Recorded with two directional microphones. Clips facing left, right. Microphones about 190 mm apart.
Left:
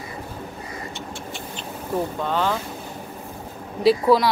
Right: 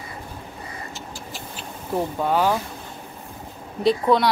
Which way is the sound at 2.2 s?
10° right (ahead or behind).